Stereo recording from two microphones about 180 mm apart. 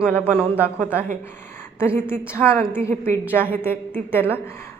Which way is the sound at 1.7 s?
15° left (ahead or behind).